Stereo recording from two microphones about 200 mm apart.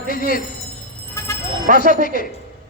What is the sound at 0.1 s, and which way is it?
Speech, 45° left (ahead or behind).